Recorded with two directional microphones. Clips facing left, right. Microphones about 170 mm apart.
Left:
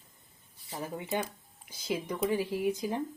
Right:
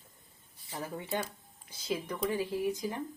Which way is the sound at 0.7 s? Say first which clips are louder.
Left 2 dB; 15° left (ahead or behind).